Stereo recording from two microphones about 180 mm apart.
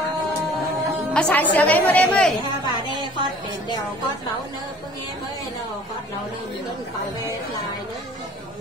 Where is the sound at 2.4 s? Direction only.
25° right (ahead or behind).